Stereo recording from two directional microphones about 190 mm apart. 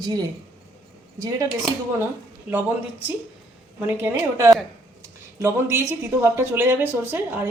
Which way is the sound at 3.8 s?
15° right (ahead or behind).